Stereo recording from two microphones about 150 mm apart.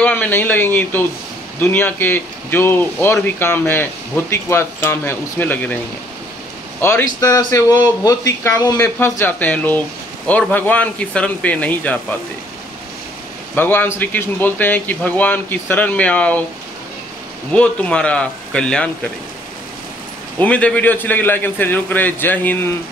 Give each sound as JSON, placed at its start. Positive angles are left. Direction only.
{"t": 0.0, "sound": "speech", "side_deg": 10}
{"t": 6.8, "sound": "speech", "side_deg": 15}
{"t": 13.6, "sound": "speech", "side_deg": 15}
{"t": 17.5, "sound": "speech", "side_deg": 5}
{"t": 20.3, "sound": "speech", "side_deg": 10}